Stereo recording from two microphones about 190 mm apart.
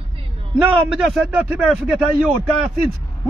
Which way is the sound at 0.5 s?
Centre (ahead or behind).